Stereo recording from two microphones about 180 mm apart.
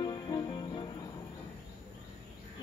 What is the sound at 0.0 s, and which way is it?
Music, 25° left (ahead or behind).